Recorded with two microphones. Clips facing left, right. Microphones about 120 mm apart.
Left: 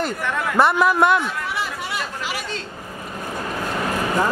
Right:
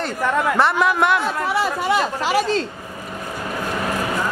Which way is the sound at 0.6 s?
5° left (ahead or behind).